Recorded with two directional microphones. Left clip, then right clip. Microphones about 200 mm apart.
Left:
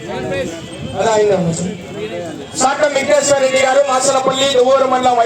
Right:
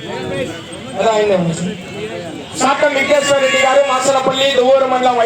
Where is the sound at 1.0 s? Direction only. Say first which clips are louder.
Even; 60° left (ahead or behind).